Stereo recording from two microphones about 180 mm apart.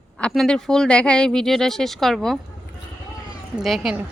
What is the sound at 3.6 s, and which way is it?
Speech, centre (ahead or behind).